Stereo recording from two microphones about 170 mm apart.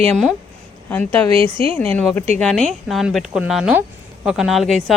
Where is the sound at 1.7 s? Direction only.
5° left (ahead or behind).